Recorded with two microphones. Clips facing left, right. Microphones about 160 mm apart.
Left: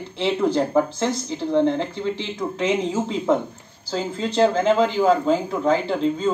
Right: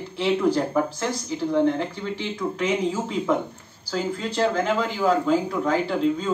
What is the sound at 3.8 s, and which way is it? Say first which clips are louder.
A man's voice: left 1 dB; 25° left (ahead or behind).